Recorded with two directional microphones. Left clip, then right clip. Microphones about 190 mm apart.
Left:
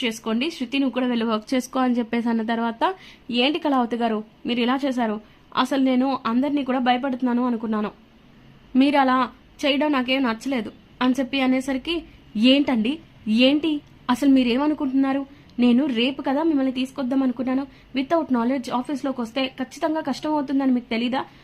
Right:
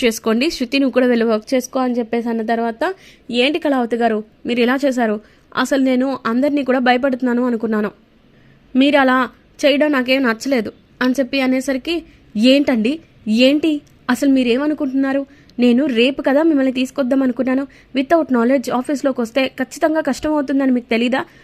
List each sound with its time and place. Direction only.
0.0 s a woman's voice: 30° right (ahead or behind)
14.4 s a woman's voice: 10° right (ahead or behind); by 21.2 s 25° right (ahead or behind)